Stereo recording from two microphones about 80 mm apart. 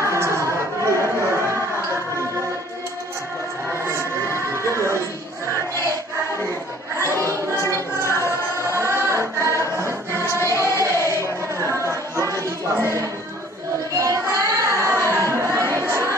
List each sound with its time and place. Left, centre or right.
0.0 s a sound: right
7.0 s a sound: right
8.0 s music: left
8.5 s music: right
10.1 s choir: left
10.5 s music: left
11.7 s chatter: right
12.3 s a sound: right
13.9 s child singing: right